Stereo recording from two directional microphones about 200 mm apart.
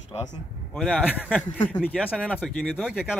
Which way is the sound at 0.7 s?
5° left (ahead or behind).